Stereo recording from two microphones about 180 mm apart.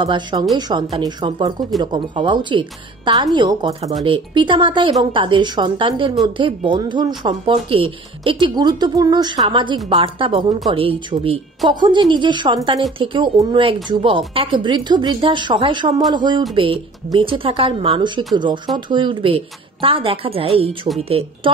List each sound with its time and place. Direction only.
0.0 s speech: 25° right (ahead or behind)